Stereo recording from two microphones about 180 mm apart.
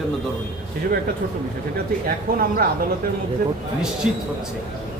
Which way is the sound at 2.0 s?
55° right (ahead or behind).